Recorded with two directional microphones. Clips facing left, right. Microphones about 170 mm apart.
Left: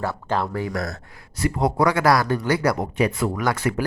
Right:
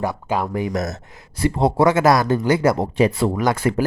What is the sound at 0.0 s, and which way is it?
Speech, 15° right (ahead or behind).